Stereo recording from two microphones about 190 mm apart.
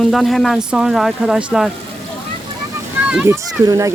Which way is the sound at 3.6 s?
20° right (ahead or behind).